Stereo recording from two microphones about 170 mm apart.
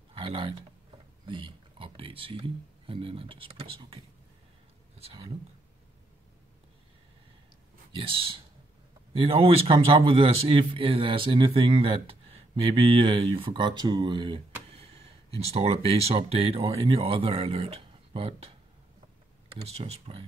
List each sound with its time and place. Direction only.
0.1 s a sound: 30° right (ahead or behind)
1.2 s a man's voice: 30° right (ahead or behind)
7.9 s a man's voice: 30° right (ahead or behind)
19.5 s a man's voice: 35° right (ahead or behind)